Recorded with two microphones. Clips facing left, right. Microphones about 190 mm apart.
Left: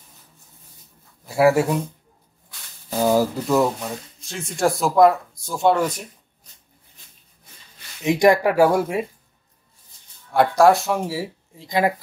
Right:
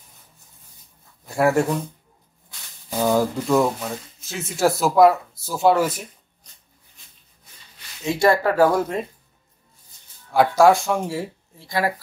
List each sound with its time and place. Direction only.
1.2 s speech: 5° left (ahead or behind)
2.9 s speech: 10° left (ahead or behind)
8.0 s speech: 15° left (ahead or behind)
10.3 s speech: centre (ahead or behind)
11.5 s speech: 20° left (ahead or behind)